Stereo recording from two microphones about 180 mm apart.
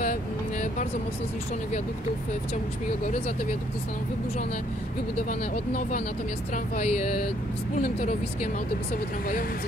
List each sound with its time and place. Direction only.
0.0 s vehicle: 45° left (ahead or behind)
5.8 s speech: 45° left (ahead or behind)